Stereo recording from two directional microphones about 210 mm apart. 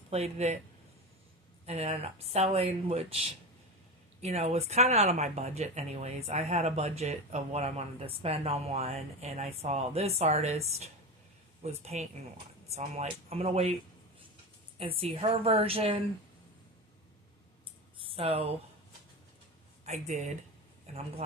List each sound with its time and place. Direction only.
0.1 s speech: 30° right (ahead or behind)
1.6 s speech: 30° right (ahead or behind)
4.2 s speech: 30° right (ahead or behind)
14.8 s speech: 25° right (ahead or behind)
18.0 s speech: 25° right (ahead or behind)
19.8 s speech: 35° right (ahead or behind)